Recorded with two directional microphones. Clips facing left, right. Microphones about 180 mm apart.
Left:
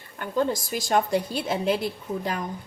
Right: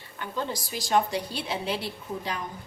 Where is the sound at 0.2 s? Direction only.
45° left (ahead or behind).